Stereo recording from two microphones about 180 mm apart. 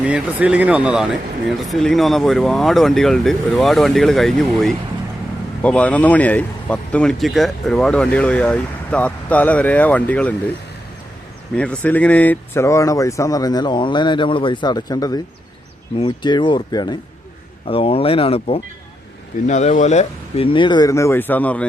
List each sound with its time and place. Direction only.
0.0 s speech: 5° right (ahead or behind); by 10.5 s 10° left (ahead or behind)
11.5 s speech: 5° left (ahead or behind)